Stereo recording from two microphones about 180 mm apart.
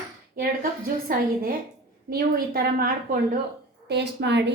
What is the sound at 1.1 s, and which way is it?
A woman's voice, 55° right (ahead or behind).